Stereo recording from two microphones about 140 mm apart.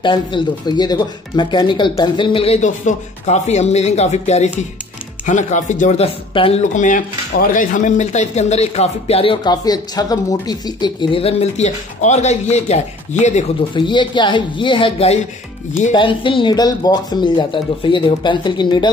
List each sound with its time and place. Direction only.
0.0 s speech: 35° left (ahead or behind)
6.6 s speech: 65° left (ahead or behind)
13.7 s speech: 35° left (ahead or behind)